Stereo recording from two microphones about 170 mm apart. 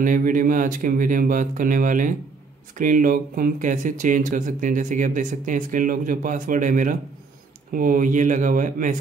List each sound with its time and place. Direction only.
0.0 s speech: 50° right (ahead or behind)